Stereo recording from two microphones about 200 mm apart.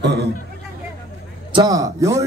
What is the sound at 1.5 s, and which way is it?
Speech, 15° right (ahead or behind).